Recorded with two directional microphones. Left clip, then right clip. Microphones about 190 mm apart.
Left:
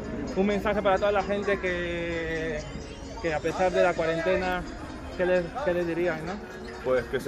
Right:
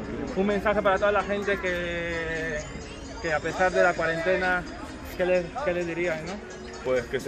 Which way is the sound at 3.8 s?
40° left (ahead or behind).